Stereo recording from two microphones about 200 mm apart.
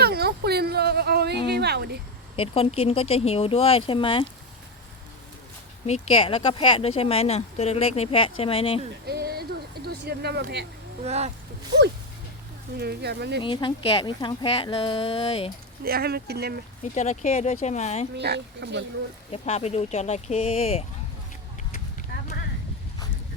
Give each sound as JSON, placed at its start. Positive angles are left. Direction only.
{"t": 0.0, "sound": "a sound", "side_deg": -50}
{"t": 1.5, "sound": "speech", "side_deg": -55}
{"t": 2.3, "sound": "speech", "side_deg": 30}
{"t": 5.8, "sound": "speech", "side_deg": 30}
{"t": 9.0, "sound": "a sound", "side_deg": -50}
{"t": 11.0, "sound": "speech", "side_deg": -35}
{"t": 12.7, "sound": "speech", "side_deg": -55}
{"t": 13.4, "sound": "speech", "side_deg": 25}
{"t": 15.8, "sound": "speech", "side_deg": -50}
{"t": 16.8, "sound": "speech", "side_deg": 35}
{"t": 18.2, "sound": "speech", "side_deg": -60}
{"t": 19.3, "sound": "speech", "side_deg": 30}